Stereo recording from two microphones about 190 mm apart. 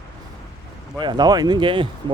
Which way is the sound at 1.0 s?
20° right (ahead or behind).